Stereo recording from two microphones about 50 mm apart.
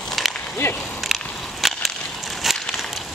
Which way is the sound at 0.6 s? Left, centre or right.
Left.